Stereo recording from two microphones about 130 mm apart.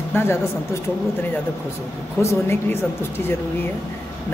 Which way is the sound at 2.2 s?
20° left (ahead or behind).